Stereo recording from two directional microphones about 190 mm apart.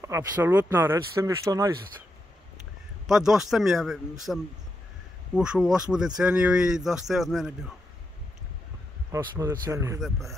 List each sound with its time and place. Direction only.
0.0 s speech: 15° right (ahead or behind)
3.1 s speech: centre (ahead or behind)
9.1 s speech: 15° right (ahead or behind)